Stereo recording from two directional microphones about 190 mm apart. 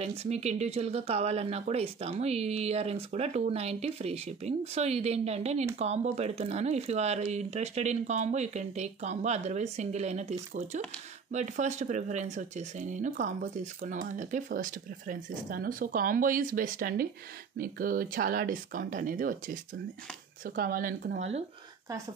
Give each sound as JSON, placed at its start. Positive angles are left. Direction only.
{"t": 0.0, "sound": "speech", "side_deg": -35}
{"t": 21.2, "sound": "speech", "side_deg": -35}